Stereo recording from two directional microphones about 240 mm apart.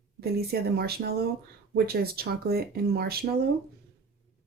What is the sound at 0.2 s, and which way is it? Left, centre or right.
Speech, right.